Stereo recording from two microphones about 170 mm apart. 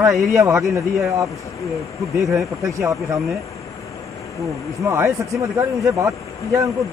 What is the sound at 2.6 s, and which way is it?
Speech, 20° right (ahead or behind).